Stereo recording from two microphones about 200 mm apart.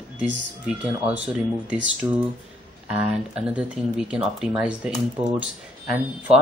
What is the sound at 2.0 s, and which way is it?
Speech, 20° right (ahead or behind).